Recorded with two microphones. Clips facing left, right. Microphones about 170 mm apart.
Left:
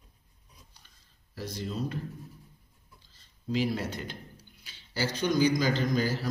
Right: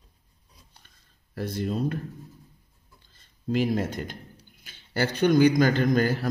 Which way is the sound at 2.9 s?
55° right (ahead or behind).